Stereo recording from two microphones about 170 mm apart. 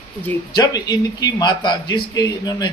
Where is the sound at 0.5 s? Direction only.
25° left (ahead or behind).